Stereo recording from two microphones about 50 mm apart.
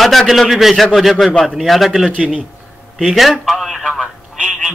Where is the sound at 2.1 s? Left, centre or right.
Right.